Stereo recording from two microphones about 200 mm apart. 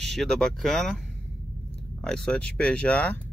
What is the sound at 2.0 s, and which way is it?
Speech, 5° left (ahead or behind).